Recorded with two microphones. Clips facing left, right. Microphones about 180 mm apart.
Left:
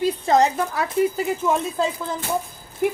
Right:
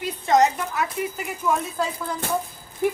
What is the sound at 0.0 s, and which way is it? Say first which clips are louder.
A woman's voice: left 1 dB; 30° left (ahead or behind).